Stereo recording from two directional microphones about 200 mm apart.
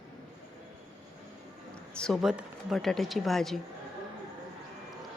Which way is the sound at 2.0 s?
Centre (ahead or behind).